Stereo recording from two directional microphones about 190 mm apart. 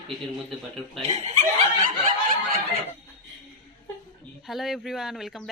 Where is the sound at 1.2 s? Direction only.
35° right (ahead or behind).